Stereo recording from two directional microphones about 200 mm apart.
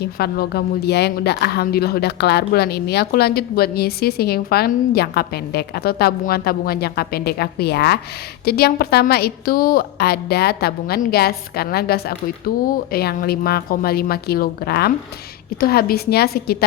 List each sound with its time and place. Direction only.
0.0 s a woman's voice: 50° left (ahead or behind)